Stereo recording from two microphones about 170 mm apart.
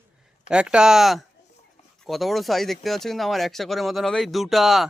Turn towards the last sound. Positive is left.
turn(degrees=0)  # may be behind; listen again after turning